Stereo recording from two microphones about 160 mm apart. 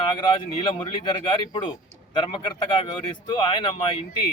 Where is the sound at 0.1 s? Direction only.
30° left (ahead or behind).